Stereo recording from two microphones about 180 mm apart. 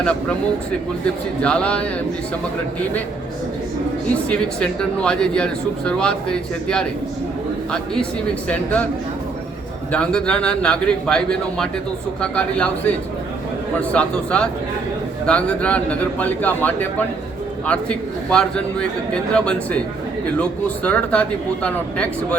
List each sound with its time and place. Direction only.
1.4 s speech: 5° left (ahead or behind)
4.3 s speech: 5° left (ahead or behind)
8.4 s speech: 10° left (ahead or behind)
9.9 s speech: 5° left (ahead or behind)
13.9 s speech: 5° left (ahead or behind)